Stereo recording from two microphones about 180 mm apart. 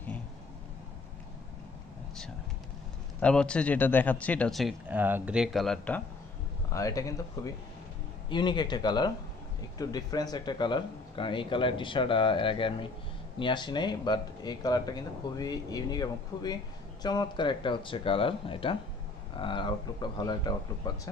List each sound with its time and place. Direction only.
3.2 s speech: 5° left (ahead or behind)
6.7 s speech: 20° left (ahead or behind)